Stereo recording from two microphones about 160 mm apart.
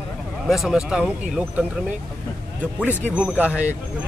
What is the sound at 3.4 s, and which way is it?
Speech, 10° right (ahead or behind).